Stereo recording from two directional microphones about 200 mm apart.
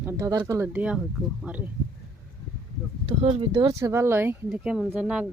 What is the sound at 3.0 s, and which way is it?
Speech, 30° right (ahead or behind).